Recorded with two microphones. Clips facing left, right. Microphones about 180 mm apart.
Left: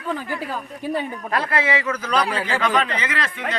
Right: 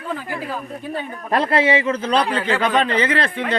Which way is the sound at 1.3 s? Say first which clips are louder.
Right 6 dB; 25° right (ahead or behind).